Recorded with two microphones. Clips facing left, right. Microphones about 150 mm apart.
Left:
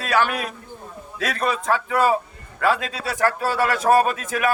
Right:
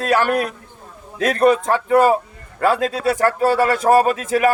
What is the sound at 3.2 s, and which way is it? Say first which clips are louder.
Speech: right 3 dB; 25° right (ahead or behind).